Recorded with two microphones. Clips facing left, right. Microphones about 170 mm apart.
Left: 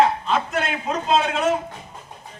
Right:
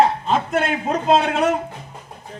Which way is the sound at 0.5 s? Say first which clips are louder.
Right 4 dB; 55° right (ahead or behind).